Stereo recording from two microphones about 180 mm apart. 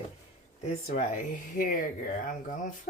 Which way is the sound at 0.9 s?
45° left (ahead or behind).